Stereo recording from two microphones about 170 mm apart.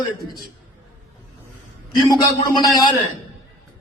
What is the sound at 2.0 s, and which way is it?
Speech, 25° left (ahead or behind).